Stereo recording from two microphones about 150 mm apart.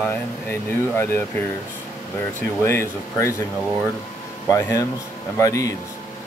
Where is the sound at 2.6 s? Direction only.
15° left (ahead or behind).